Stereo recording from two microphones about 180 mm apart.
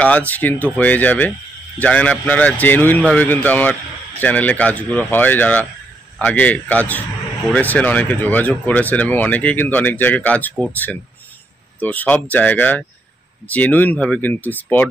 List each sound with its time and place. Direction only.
0.0 s speech: 10° left (ahead or behind)